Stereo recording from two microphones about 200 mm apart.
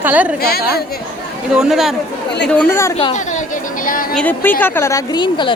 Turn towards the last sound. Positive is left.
turn(degrees=20)  # may be behind; listen again after turning